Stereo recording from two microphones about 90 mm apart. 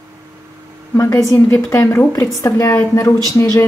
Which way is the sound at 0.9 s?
35° left (ahead or behind).